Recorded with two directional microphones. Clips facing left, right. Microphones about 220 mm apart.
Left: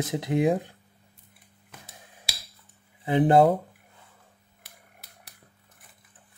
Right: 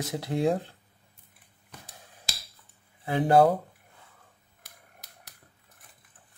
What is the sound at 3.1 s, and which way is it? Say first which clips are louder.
Speech: left 2 dB; 20° left (ahead or behind).